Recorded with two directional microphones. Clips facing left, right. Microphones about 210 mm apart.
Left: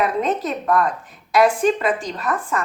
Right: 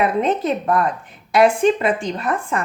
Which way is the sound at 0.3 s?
25° right (ahead or behind).